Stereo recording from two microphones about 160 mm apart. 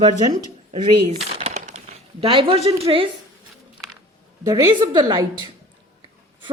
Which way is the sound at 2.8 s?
35° right (ahead or behind).